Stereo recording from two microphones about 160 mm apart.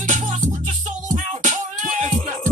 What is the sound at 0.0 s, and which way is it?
Music, 50° right (ahead or behind).